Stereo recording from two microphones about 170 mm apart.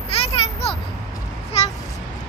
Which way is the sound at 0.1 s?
35° left (ahead or behind).